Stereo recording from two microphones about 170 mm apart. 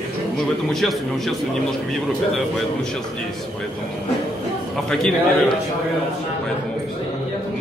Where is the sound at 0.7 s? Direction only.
Centre (ahead or behind).